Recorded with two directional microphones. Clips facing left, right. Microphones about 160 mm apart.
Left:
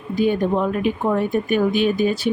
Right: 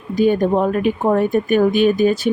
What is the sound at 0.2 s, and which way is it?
Speech, 45° right (ahead or behind).